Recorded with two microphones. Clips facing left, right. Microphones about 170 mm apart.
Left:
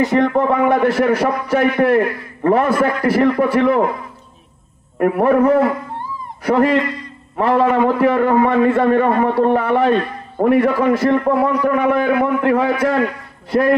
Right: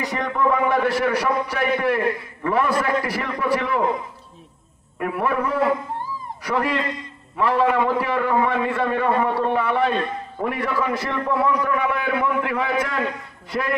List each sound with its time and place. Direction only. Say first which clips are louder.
0.1 s a man's voice: left 7 dB; 50° left (ahead or behind)
4.9 s a man's voice: left 9 dB; 50° left (ahead or behind)
6.8 s a man's voice: left 5 dB; 20° right (ahead or behind)
7.3 s a man's voice: left 5 dB; 50° left (ahead or behind)